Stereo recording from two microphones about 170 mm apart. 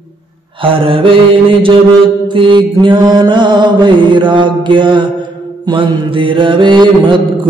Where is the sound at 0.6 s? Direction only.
30° right (ahead or behind).